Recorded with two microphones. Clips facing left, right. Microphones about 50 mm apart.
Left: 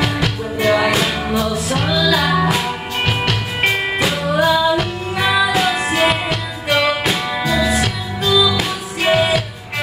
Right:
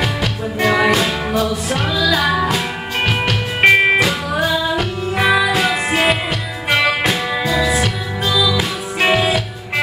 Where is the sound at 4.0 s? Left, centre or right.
Centre.